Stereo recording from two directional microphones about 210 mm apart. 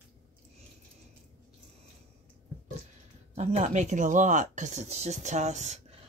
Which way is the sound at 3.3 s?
35° right (ahead or behind).